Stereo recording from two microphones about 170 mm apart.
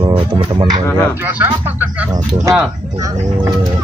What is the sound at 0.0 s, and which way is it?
Music, 30° right (ahead or behind).